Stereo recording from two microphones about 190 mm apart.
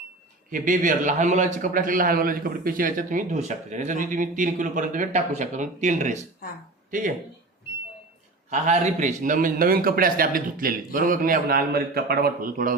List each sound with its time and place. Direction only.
0.5 s a man's voice: 45° right (ahead or behind)
8.4 s a man's voice: 35° right (ahead or behind)